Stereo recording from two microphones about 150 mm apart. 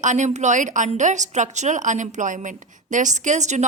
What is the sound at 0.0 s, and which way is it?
A woman's voice, 55° right (ahead or behind).